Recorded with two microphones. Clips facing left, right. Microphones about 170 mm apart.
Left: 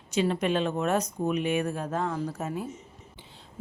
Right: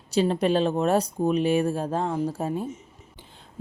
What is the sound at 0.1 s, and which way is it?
A woman's voice, 35° right (ahead or behind).